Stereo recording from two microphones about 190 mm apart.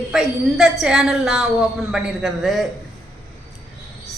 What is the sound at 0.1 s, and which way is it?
A woman's voice, centre (ahead or behind).